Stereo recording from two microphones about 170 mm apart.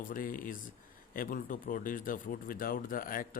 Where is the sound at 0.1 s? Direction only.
55° left (ahead or behind).